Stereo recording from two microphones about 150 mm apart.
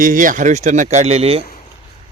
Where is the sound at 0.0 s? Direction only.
65° right (ahead or behind); by 1.5 s 40° right (ahead or behind).